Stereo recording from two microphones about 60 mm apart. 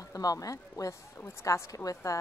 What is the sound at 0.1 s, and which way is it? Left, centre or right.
A woman's voice, left.